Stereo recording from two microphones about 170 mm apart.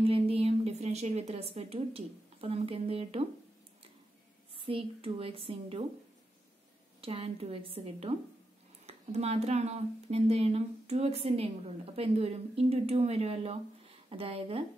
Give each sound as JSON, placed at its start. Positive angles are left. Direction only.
{"t": 0.0, "sound": "a woman's voice", "side_deg": -35}
{"t": 4.6, "sound": "speech", "side_deg": -30}
{"t": 7.0, "sound": "speech", "side_deg": -35}